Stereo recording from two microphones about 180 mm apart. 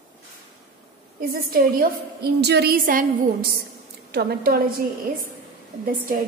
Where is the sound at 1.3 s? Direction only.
55° right (ahead or behind).